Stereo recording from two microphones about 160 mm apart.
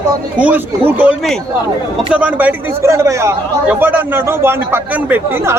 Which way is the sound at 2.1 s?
10° right (ahead or behind).